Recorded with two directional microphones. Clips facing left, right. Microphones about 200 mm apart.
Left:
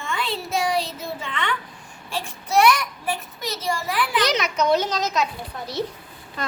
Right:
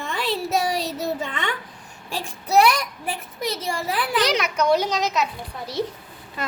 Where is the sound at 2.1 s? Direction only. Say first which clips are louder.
Right 2 dB; 40° right (ahead or behind).